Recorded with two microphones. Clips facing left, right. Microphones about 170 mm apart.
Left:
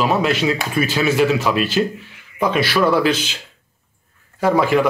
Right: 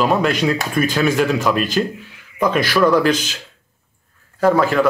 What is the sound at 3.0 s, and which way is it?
Speech, 45° right (ahead or behind).